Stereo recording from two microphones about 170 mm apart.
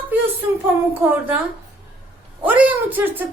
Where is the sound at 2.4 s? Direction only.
10° right (ahead or behind).